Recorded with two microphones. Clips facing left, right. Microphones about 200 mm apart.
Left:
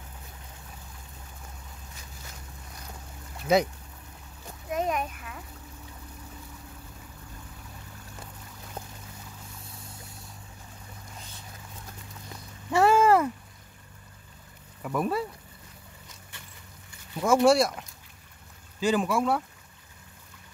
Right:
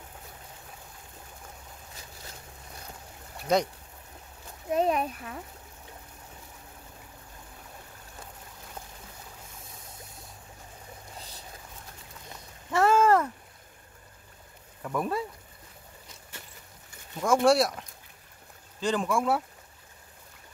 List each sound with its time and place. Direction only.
3.5 s speech: 5° left (ahead or behind)
4.6 s a child's voice: 30° right (ahead or behind)
11.1 s boat: 35° right (ahead or behind)
12.7 s a sound: 10° left (ahead or behind)
14.8 s speech: 5° left (ahead or behind)
17.2 s speech: 5° left (ahead or behind)